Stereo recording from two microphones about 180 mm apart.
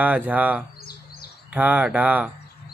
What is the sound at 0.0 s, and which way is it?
Speech, 10° right (ahead or behind).